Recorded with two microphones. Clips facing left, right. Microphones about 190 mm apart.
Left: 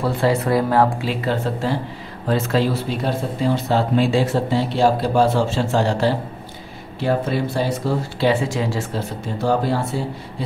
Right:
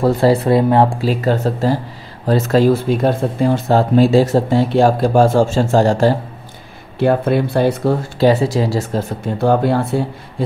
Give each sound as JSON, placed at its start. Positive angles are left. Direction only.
{"t": 0.0, "sound": "speech", "side_deg": -35}
{"t": 1.0, "sound": "speech", "side_deg": -40}
{"t": 7.0, "sound": "speech", "side_deg": -55}
{"t": 8.2, "sound": "speech", "side_deg": -40}
{"t": 9.4, "sound": "speech", "side_deg": -60}